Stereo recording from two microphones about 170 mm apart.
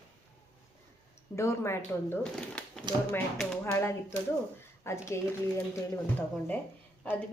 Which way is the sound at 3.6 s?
15° left (ahead or behind).